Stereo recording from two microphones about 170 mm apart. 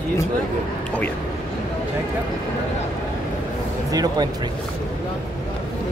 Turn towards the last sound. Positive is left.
turn(degrees=-25)  # may be behind; listen again after turning